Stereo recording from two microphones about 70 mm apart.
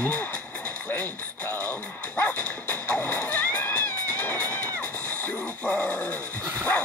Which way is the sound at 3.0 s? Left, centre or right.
Centre.